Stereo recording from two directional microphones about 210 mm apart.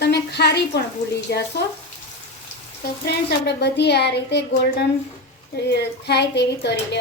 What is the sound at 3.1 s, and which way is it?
A woman's voice, 50° left (ahead or behind).